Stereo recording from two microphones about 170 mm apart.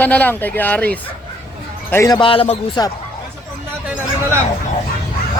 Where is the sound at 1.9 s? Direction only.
20° left (ahead or behind); by 2.8 s 35° left (ahead or behind).